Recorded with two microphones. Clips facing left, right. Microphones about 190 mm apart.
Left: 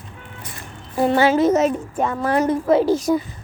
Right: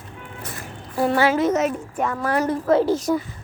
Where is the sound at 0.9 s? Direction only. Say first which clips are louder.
Left 3 dB; 20° left (ahead or behind).